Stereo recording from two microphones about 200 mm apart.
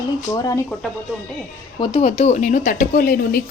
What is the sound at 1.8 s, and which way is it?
Speech, 25° left (ahead or behind).